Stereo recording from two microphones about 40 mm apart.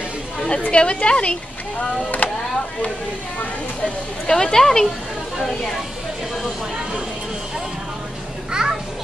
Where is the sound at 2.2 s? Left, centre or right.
Left.